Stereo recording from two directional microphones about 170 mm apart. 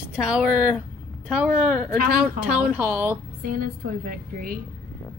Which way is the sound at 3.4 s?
55° right (ahead or behind).